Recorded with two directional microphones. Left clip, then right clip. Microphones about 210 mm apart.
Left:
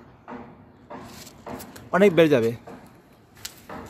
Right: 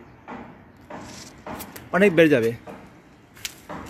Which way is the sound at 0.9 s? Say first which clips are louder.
Right 2 dB; 45° right (ahead or behind).